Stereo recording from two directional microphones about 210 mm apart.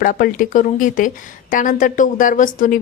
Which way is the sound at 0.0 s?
40° left (ahead or behind).